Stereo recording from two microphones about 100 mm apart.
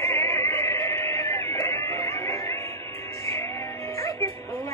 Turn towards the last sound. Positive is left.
turn(degrees=30)  # may be behind; listen again after turning